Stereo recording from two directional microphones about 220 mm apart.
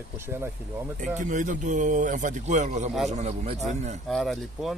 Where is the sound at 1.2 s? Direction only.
35° right (ahead or behind).